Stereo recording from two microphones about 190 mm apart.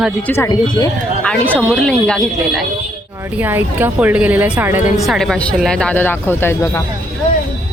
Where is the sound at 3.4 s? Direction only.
10° right (ahead or behind).